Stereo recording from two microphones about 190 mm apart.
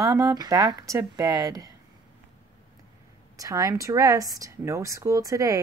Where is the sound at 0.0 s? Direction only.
15° right (ahead or behind).